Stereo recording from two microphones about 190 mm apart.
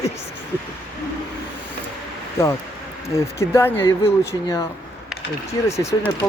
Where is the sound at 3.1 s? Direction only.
15° left (ahead or behind).